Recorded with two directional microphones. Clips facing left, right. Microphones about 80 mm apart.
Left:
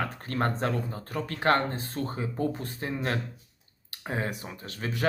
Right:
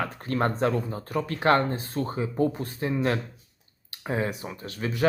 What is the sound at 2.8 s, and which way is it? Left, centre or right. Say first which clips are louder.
Speech: right 5 dB; right.